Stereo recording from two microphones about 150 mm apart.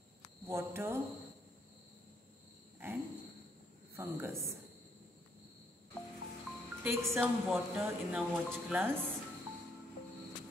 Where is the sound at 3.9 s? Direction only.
15° right (ahead or behind).